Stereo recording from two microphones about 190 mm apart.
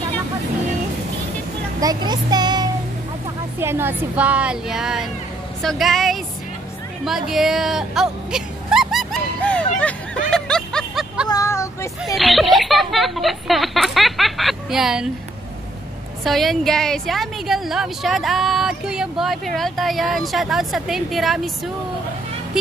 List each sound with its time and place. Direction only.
1.8 s a woman's voice: 20° right (ahead or behind); by 6.1 s centre (ahead or behind)
7.1 s a sound: centre (ahead or behind)
9.8 s snicker: 5° left (ahead or behind)
11.2 s vehicle: 15° left (ahead or behind)
12.0 s speech: centre (ahead or behind)
16.3 s a woman's voice: centre (ahead or behind)